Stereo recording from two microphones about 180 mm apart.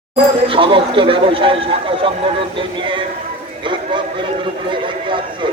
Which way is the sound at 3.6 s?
25° right (ahead or behind).